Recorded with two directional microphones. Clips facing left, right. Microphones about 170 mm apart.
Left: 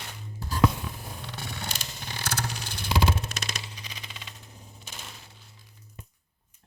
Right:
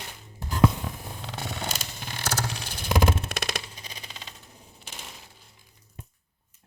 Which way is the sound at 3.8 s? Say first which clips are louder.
Right 1 dB; 35° right (ahead or behind).